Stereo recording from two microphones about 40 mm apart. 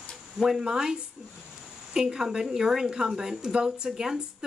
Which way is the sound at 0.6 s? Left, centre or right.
Centre.